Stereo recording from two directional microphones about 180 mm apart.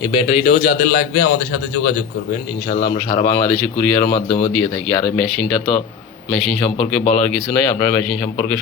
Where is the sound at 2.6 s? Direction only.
55° left (ahead or behind).